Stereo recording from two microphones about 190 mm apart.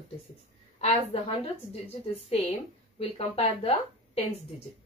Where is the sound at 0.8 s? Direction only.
30° left (ahead or behind).